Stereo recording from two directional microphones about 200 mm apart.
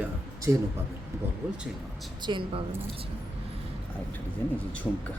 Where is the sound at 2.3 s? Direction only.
20° right (ahead or behind).